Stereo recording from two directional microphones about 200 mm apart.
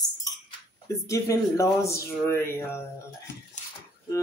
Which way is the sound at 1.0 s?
15° left (ahead or behind).